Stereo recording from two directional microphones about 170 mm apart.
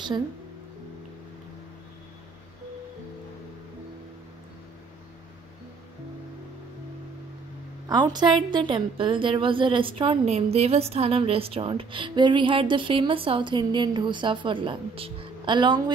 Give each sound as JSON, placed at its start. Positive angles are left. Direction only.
{"t": 7.9, "sound": "a woman's voice", "side_deg": -25}